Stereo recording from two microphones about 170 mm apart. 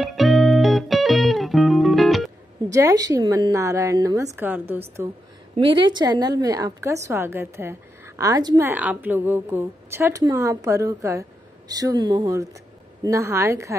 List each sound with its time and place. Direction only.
0.0 s music: centre (ahead or behind)
2.7 s a woman's voice: 20° right (ahead or behind)
5.6 s a woman's voice: 30° right (ahead or behind)
8.6 s a woman's voice: 10° right (ahead or behind)